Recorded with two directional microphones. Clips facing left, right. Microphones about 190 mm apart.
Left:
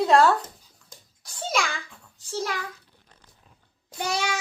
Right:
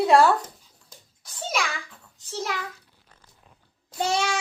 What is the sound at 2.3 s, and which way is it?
Speech, 20° right (ahead or behind).